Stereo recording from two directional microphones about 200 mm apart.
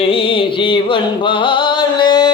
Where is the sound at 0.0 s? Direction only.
25° left (ahead or behind).